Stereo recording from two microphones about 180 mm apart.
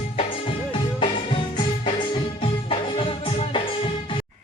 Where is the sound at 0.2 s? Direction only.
30° left (ahead or behind).